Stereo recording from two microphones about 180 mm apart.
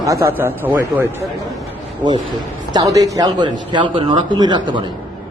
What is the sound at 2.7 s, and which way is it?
A man's voice, 20° right (ahead or behind).